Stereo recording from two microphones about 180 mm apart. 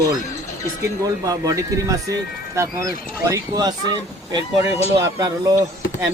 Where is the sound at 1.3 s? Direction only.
20° right (ahead or behind).